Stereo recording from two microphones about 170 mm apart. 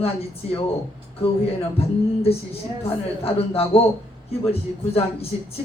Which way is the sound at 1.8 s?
35° left (ahead or behind).